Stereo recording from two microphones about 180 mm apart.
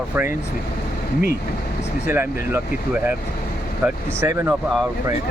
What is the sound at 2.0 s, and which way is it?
Speech, 10° right (ahead or behind).